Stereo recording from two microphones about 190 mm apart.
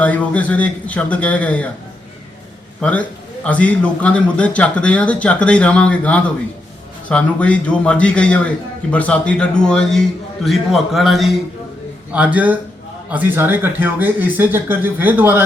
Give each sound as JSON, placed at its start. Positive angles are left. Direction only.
{"t": 0.0, "sound": "a man's voice", "side_deg": 5}
{"t": 3.4, "sound": "a man's voice", "side_deg": 5}